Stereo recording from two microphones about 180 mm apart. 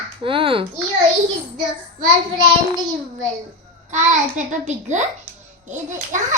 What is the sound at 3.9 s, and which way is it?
A child's voice, 40° right (ahead or behind).